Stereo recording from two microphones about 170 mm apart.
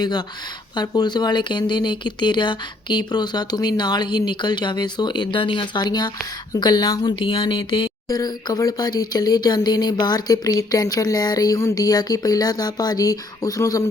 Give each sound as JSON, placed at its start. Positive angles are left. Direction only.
{"t": 0.8, "sound": "speech", "side_deg": 25}